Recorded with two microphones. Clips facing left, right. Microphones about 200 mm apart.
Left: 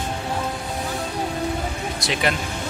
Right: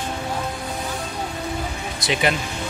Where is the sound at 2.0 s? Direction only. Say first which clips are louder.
Right 2 dB; centre (ahead or behind).